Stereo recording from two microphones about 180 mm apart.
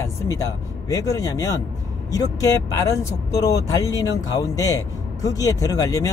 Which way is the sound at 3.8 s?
20° left (ahead or behind).